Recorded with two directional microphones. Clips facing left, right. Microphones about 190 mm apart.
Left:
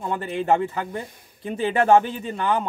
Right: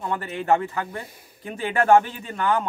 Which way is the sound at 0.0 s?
20° left (ahead or behind).